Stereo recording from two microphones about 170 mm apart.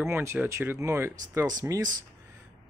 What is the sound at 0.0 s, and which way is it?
Speech, 15° right (ahead or behind).